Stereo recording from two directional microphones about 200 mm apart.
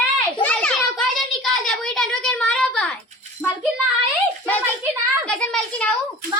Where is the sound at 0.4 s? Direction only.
5° left (ahead or behind).